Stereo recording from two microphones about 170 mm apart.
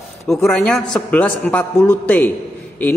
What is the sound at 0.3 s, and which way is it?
A man's voice, centre (ahead or behind).